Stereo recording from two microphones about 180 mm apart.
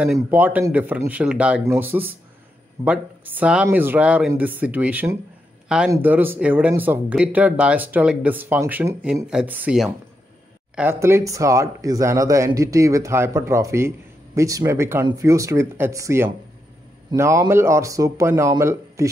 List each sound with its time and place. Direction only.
0.0 s speech: 5° right (ahead or behind)